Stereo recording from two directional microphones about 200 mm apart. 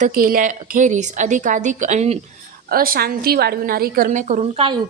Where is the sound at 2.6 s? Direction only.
45° right (ahead or behind).